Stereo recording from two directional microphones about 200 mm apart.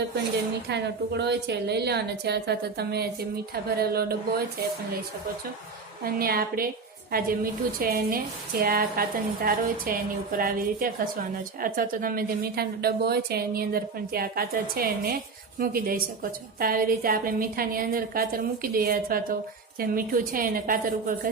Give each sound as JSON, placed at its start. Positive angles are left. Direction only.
{"t": 0.7, "sound": "a woman's voice", "side_deg": -55}
{"t": 6.1, "sound": "a woman's voice", "side_deg": -50}